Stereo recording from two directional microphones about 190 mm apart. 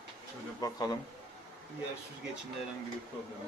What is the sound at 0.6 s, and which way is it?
Speech, 20° left (ahead or behind).